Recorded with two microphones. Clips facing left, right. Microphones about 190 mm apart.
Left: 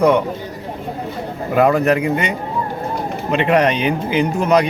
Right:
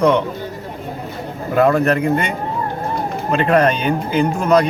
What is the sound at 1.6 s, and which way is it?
Speech, 10° left (ahead or behind).